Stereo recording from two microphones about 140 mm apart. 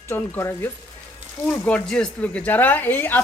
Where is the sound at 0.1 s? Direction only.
15° left (ahead or behind).